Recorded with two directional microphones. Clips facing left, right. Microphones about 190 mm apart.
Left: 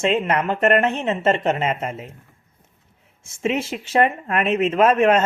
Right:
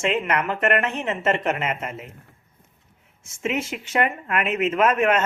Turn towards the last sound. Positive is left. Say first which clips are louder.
# left 4 dB
turn(degrees=30)  # may be behind; listen again after turning